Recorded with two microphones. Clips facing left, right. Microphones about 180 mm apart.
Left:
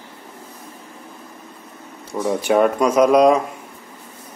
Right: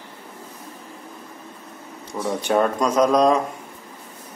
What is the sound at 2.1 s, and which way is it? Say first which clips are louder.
Speech: left 4 dB; 10° left (ahead or behind).